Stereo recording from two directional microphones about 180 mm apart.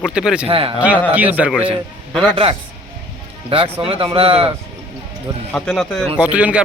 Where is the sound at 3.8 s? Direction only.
30° right (ahead or behind).